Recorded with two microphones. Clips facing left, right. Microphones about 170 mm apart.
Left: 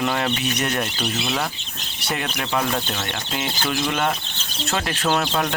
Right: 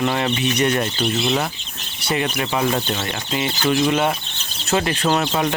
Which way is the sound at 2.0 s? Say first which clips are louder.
Right 5 dB; 5° right (ahead or behind).